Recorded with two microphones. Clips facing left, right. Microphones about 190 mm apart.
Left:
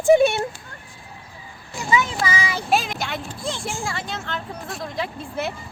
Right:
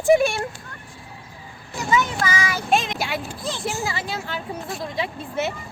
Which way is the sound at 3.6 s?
5° right (ahead or behind).